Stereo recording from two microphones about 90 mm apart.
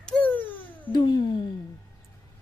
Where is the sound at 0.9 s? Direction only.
55° left (ahead or behind).